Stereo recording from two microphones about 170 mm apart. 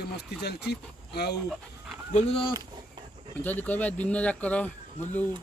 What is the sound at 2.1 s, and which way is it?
Speech, 35° left (ahead or behind).